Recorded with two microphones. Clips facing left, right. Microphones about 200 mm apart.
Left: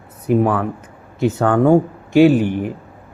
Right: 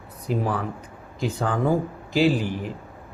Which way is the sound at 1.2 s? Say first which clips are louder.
Left 9 dB; 70° left (ahead or behind).